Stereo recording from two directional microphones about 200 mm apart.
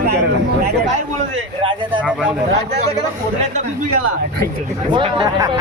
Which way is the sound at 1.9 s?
5° right (ahead or behind).